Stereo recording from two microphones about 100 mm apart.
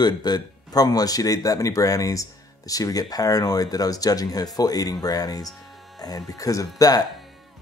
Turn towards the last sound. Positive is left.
turn(degrees=35)  # may be behind; listen again after turning